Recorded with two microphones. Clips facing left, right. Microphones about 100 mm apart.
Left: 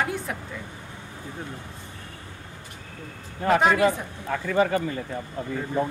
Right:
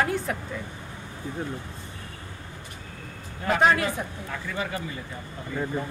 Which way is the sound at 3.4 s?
45° left (ahead or behind).